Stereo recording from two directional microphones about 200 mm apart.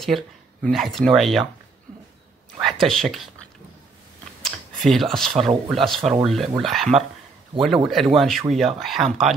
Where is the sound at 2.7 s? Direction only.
Centre (ahead or behind).